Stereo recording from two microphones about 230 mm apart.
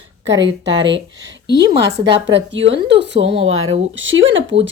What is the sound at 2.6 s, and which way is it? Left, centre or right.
A woman's voice, right.